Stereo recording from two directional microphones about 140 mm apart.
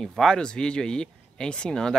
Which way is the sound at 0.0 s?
5° left (ahead or behind).